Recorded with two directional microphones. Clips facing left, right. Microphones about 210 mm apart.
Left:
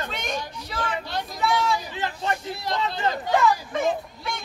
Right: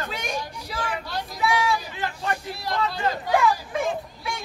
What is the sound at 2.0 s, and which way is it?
Speech, 20° left (ahead or behind).